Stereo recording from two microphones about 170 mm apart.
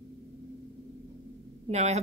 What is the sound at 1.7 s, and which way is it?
Speech, 40° right (ahead or behind).